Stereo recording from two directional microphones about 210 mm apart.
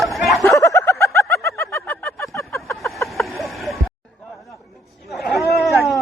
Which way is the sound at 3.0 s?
Centre (ahead or behind).